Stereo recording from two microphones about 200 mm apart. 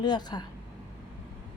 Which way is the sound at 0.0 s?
20° left (ahead or behind).